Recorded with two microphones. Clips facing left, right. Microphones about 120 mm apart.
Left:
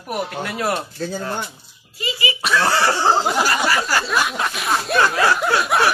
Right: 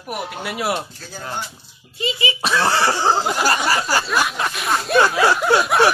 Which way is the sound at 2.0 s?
25° right (ahead or behind).